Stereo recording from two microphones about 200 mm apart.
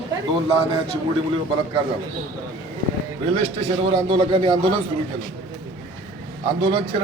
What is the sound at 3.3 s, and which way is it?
A man's voice, 30° right (ahead or behind).